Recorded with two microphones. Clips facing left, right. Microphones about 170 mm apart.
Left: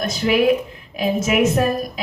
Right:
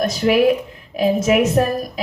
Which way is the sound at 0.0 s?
40° right (ahead or behind).